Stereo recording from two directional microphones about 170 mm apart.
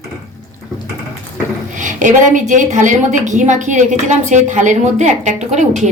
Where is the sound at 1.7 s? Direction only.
50° right (ahead or behind).